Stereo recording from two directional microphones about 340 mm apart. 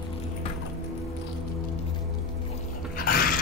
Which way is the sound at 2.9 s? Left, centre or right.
Left.